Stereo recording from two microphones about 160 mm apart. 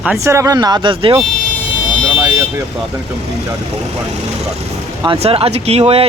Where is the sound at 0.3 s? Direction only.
20° right (ahead or behind).